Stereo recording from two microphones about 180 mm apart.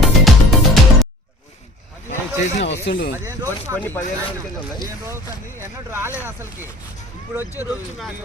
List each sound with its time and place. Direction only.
0.0 s music: centre (ahead or behind)
2.0 s a sound: 40° left (ahead or behind)
2.8 s speech: 55° left (ahead or behind)
3.2 s speech: 15° right (ahead or behind)
3.8 s speech: 10° left (ahead or behind)
4.3 s speech: 25° left (ahead or behind)
5.0 s speech: 15° right (ahead or behind)
7.6 s speech: centre (ahead or behind)